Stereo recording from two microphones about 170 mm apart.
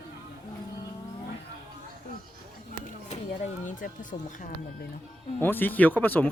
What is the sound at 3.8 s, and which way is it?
Music, 50° left (ahead or behind).